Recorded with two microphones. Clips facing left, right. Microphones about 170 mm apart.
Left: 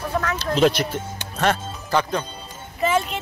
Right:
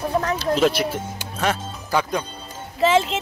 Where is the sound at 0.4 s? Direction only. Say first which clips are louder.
Left 3 dB; 5° right (ahead or behind).